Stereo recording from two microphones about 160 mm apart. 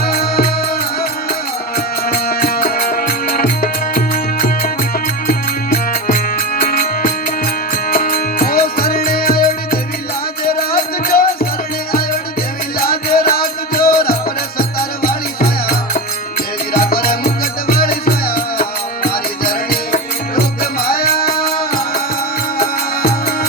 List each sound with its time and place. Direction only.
0.0 s music: 75° left (ahead or behind)
12.8 s music: 70° left (ahead or behind)
22.5 s music: 65° left (ahead or behind)